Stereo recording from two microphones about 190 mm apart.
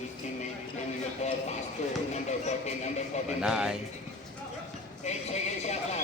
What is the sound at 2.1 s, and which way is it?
Speech, 35° left (ahead or behind).